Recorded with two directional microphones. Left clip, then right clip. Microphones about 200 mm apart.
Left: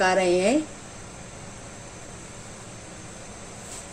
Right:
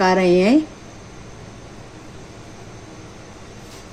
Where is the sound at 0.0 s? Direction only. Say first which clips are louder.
Right 5 dB; 40° right (ahead or behind).